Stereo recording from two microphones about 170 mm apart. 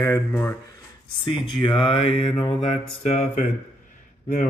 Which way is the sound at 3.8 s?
50° left (ahead or behind).